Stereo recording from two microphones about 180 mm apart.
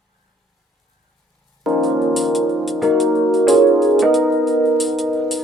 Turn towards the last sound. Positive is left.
turn(degrees=0)  # may be behind; listen again after turning